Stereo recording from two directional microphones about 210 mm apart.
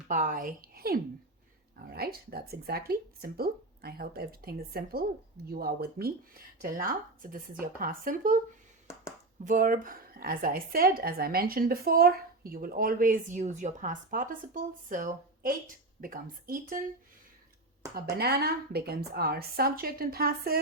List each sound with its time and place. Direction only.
0.1 s speech: 40° right (ahead or behind)
9.4 s speech: 40° right (ahead or behind)
17.9 s speech: 50° right (ahead or behind)